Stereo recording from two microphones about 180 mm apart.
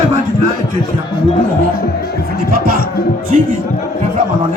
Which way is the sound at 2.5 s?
55° right (ahead or behind).